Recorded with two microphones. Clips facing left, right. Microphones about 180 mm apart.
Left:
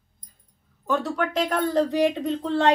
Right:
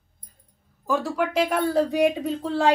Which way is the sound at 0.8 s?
5° right (ahead or behind).